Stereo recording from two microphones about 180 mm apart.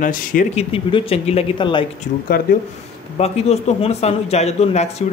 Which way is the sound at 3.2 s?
35° left (ahead or behind).